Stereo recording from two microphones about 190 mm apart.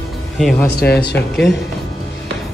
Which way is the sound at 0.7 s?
55° left (ahead or behind).